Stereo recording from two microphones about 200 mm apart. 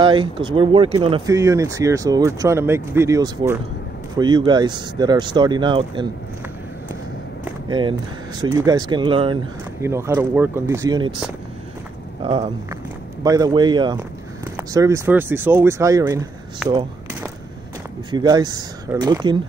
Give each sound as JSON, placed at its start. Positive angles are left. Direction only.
{"t": 0.0, "sound": "speech", "side_deg": -25}
{"t": 7.6, "sound": "speech", "side_deg": -25}
{"t": 9.8, "sound": "speech", "side_deg": -15}
{"t": 11.1, "sound": "speech", "side_deg": -5}
{"t": 12.2, "sound": "speech", "side_deg": -25}
{"t": 16.6, "sound": "speech", "side_deg": -5}
{"t": 18.1, "sound": "speech", "side_deg": -20}